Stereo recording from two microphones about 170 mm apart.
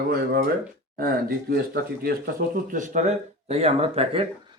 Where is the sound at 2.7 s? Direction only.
45° right (ahead or behind).